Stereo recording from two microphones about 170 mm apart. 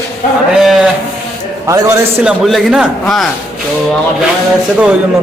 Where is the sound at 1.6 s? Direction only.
20° right (ahead or behind).